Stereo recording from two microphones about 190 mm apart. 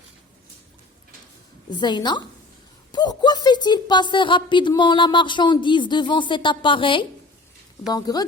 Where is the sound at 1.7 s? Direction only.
25° left (ahead or behind).